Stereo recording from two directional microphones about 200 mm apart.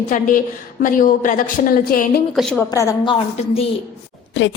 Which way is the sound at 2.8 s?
20° left (ahead or behind).